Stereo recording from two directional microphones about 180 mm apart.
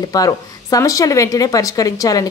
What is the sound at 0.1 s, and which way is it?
Speech, 20° left (ahead or behind).